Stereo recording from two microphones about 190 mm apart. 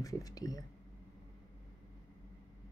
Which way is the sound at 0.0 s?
20° left (ahead or behind).